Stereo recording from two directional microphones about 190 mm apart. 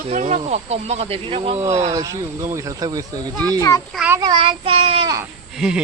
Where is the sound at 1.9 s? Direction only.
15° right (ahead or behind).